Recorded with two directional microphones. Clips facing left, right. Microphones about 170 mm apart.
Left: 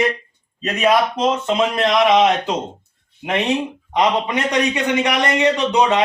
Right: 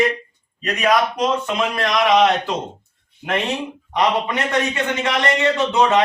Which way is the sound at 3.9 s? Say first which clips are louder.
Left 1 dB; 20° left (ahead or behind).